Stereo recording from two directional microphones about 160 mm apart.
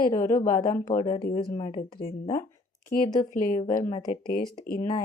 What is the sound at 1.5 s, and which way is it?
Speech, 45° left (ahead or behind).